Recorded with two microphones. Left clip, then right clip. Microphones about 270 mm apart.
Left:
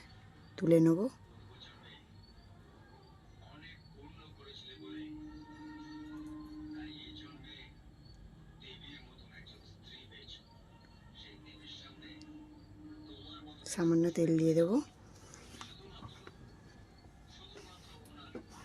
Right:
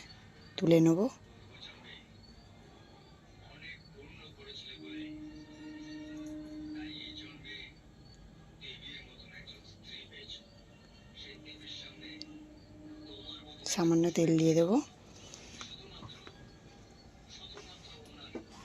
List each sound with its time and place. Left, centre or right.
0.5 s speech: centre
13.6 s speech: centre